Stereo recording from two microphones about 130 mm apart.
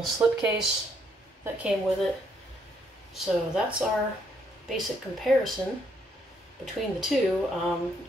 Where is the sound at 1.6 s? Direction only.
5° right (ahead or behind).